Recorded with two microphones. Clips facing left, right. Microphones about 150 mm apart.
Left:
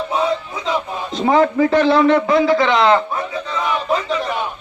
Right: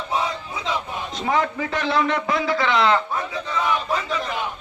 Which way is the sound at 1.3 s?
35° left (ahead or behind).